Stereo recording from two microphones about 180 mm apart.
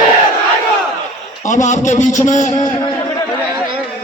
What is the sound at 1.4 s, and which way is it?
A man's voice, 40° left (ahead or behind).